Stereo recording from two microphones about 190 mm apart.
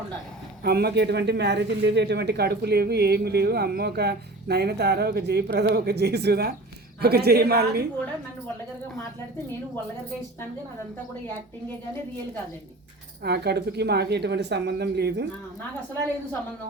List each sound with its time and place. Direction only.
0.6 s speech: 55° right (ahead or behind)
13.2 s speech: 60° right (ahead or behind)